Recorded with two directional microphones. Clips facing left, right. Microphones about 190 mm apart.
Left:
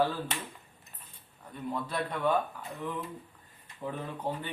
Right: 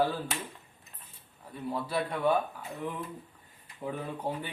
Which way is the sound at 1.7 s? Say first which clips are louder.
Right 2 dB; 10° right (ahead or behind).